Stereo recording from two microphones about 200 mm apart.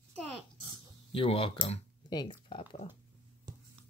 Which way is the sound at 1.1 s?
25° left (ahead or behind).